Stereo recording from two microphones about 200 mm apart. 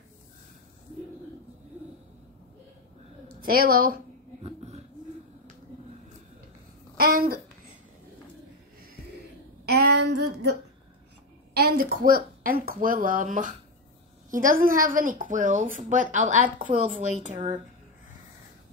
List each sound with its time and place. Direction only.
3.3 s speech: 50° right (ahead or behind)
4.4 s a sound: 30° right (ahead or behind)
7.0 s speech: 50° right (ahead or behind)
9.8 s female singing: 55° right (ahead or behind); by 10.6 s 75° right (ahead or behind)
11.8 s speech: 45° right (ahead or behind)